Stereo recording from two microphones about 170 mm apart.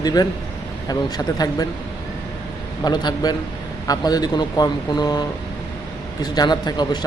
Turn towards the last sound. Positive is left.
turn(degrees=25)  # may be behind; listen again after turning